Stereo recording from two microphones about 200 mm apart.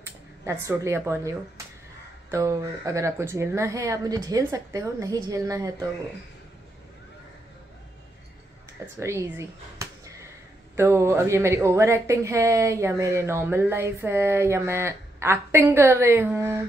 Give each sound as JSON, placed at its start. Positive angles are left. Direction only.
{"t": 0.0, "sound": "speech", "side_deg": -15}
{"t": 2.3, "sound": "speech", "side_deg": -15}
{"t": 9.0, "sound": "speech", "side_deg": -15}